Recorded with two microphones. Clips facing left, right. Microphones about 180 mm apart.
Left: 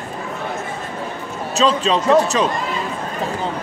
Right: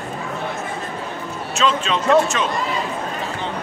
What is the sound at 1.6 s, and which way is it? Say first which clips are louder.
Speech: left 4 dB; 35° left (ahead or behind).